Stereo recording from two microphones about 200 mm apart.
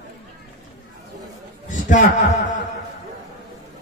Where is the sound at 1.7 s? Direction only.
40° left (ahead or behind).